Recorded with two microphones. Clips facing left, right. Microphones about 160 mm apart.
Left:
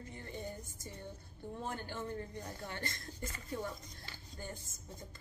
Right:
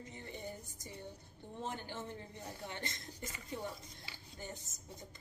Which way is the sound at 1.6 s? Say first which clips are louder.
Left 1 dB; 20° right (ahead or behind).